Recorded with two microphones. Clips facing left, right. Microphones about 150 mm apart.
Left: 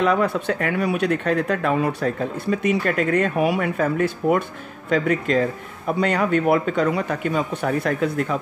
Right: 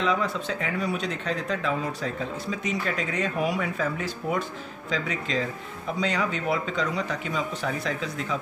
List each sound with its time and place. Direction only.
0.0 s speech: 60° left (ahead or behind)